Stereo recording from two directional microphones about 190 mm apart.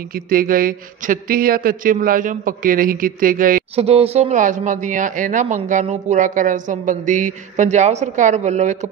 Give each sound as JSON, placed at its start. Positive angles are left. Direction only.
{"t": 0.1, "sound": "speech", "side_deg": -50}
{"t": 3.7, "sound": "speech", "side_deg": -30}